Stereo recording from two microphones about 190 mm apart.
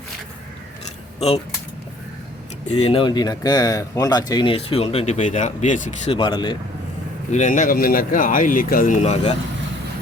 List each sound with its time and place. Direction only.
2.8 s speech: 25° left (ahead or behind)
6.1 s speech: 25° left (ahead or behind)
7.3 s a man's voice: 40° left (ahead or behind)